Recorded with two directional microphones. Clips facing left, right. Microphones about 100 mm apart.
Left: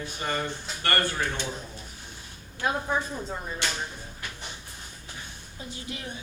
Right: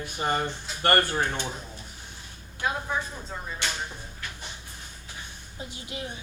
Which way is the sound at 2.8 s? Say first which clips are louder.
Left 3 dB; 15° left (ahead or behind).